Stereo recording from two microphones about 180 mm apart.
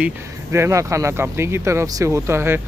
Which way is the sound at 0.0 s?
15° right (ahead or behind).